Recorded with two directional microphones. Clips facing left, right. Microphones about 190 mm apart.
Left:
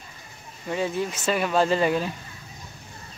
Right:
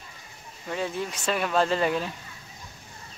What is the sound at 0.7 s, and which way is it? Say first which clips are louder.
Speech: left 4 dB; 5° left (ahead or behind).